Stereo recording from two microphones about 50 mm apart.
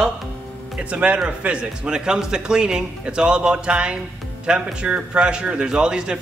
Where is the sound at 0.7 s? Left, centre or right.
Right.